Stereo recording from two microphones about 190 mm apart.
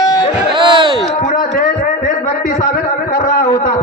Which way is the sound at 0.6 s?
25° right (ahead or behind).